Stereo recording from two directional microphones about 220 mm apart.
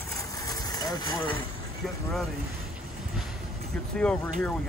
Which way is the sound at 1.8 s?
Centre (ahead or behind).